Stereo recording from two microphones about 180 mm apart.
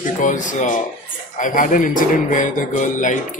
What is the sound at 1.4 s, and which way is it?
Speech, 45° left (ahead or behind).